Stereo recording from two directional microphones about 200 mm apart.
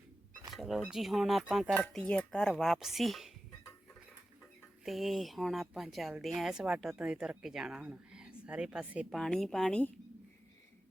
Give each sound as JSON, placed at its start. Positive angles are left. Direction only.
{"t": 0.5, "sound": "speech", "side_deg": 0}
{"t": 4.9, "sound": "speech", "side_deg": 0}